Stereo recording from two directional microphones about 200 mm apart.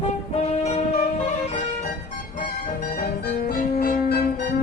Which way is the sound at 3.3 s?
50° left (ahead or behind).